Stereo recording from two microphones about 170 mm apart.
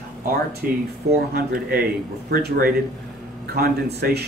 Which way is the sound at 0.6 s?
60° right (ahead or behind).